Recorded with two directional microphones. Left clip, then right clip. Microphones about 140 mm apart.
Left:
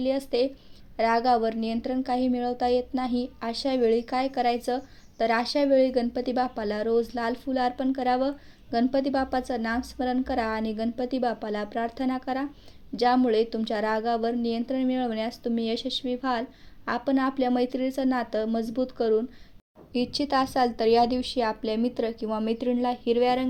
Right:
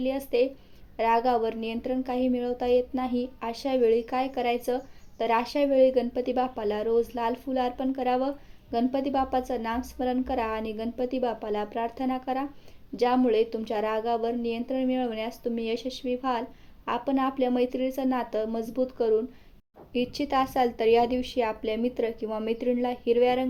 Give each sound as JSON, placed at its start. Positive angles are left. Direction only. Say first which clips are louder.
{"t": 0.0, "sound": "a woman's voice", "louder": "even", "side_deg": 30}